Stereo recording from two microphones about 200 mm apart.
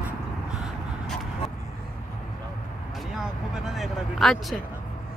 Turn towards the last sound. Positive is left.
turn(degrees=0)  # may be behind; listen again after turning